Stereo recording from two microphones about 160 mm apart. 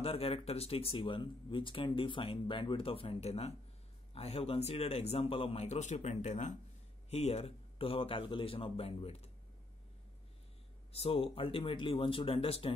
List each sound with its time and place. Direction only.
0.0 s speech: 35° left (ahead or behind)
10.9 s speech: 35° left (ahead or behind)